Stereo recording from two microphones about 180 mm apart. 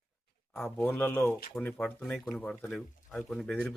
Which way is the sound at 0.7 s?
10° left (ahead or behind).